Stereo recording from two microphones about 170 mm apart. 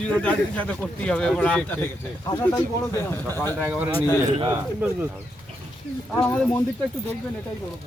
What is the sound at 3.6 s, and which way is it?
Speech, 10° right (ahead or behind).